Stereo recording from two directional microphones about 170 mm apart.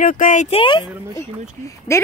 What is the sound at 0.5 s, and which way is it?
Speech, 30° left (ahead or behind).